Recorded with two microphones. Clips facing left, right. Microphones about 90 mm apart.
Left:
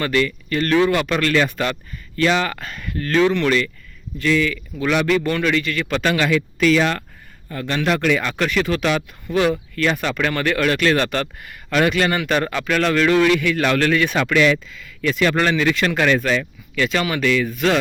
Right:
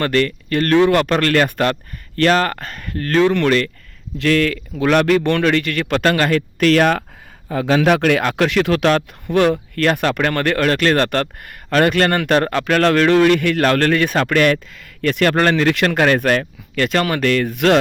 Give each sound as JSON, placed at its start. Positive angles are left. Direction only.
{"t": 0.0, "sound": "a man's voice", "side_deg": -55}
{"t": 4.2, "sound": "a man's voice", "side_deg": -70}
{"t": 7.5, "sound": "a man's voice", "side_deg": -90}